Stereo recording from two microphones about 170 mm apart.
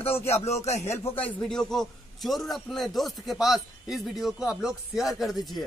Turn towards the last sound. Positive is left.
turn(degrees=0)  # may be behind; listen again after turning